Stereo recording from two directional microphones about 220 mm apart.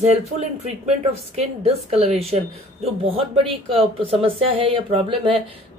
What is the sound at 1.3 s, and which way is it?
Speech, 25° right (ahead or behind).